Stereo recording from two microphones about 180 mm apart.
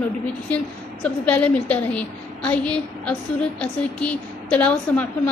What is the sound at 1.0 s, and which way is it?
A woman's voice, 5° left (ahead or behind).